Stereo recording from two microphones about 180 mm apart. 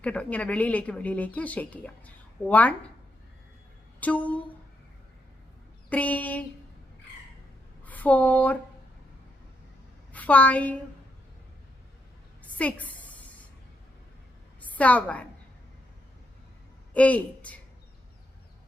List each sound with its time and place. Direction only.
0.0 s speech: 5° left (ahead or behind)
4.0 s speech: 10° left (ahead or behind)
5.9 s speech: 10° left (ahead or behind)
7.9 s speech: 10° left (ahead or behind)
10.1 s a woman's voice: 10° left (ahead or behind)
12.4 s a sound: 10° left (ahead or behind)
14.6 s a woman's voice: 10° left (ahead or behind)
16.9 s speech: 10° left (ahead or behind)